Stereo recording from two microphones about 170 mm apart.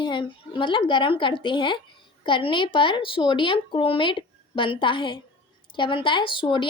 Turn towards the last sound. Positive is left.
turn(degrees=30)  # may be behind; listen again after turning